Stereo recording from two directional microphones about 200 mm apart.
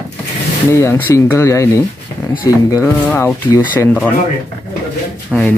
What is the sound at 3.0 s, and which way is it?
Speech, 10° left (ahead or behind).